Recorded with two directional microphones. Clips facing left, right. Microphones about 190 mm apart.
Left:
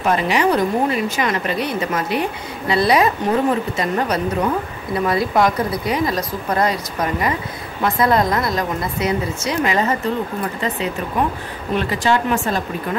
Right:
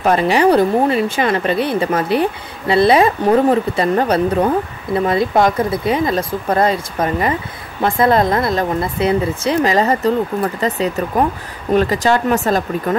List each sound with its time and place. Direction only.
0.0 s speech: 35° right (ahead or behind)